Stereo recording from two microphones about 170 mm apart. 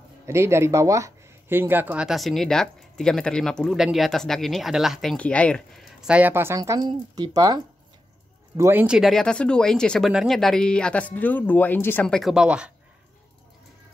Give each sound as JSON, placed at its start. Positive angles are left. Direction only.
{"t": 0.3, "sound": "speech", "side_deg": -15}
{"t": 8.8, "sound": "speech", "side_deg": 0}